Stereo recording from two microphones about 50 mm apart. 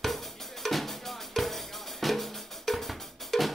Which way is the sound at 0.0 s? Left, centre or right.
Centre.